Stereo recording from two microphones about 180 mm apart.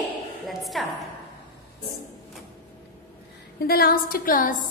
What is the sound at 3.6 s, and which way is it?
Speech, 60° left (ahead or behind).